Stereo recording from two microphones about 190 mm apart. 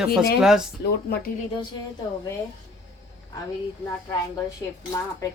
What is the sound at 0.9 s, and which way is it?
Speech, 55° left (ahead or behind).